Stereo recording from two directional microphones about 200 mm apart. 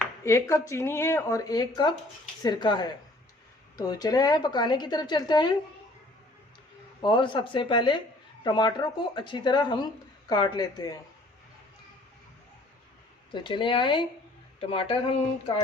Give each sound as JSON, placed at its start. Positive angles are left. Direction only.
{"t": 0.3, "sound": "speech", "side_deg": 15}
{"t": 7.0, "sound": "speech", "side_deg": 25}
{"t": 13.3, "sound": "speech", "side_deg": 25}